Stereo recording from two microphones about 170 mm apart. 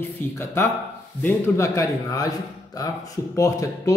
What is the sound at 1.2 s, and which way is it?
A man's voice, 15° left (ahead or behind).